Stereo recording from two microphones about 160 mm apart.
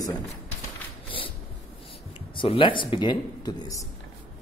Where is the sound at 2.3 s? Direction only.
30° left (ahead or behind).